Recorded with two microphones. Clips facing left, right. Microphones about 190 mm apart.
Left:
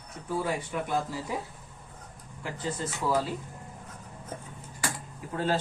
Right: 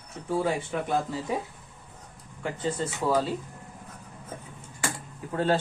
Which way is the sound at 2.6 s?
30° right (ahead or behind).